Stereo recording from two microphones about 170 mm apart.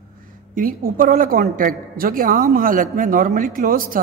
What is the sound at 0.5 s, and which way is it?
A man's voice, 55° right (ahead or behind).